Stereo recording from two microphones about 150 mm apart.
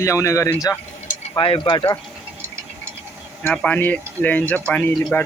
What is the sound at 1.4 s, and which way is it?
Speech, 35° left (ahead or behind).